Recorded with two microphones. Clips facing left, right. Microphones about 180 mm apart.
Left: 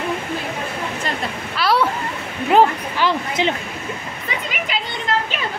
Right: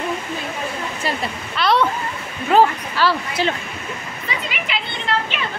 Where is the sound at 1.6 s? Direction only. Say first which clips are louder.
Right 1 dB; 5° left (ahead or behind).